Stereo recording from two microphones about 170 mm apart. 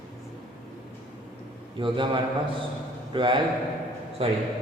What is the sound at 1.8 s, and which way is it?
A man's voice, 30° right (ahead or behind).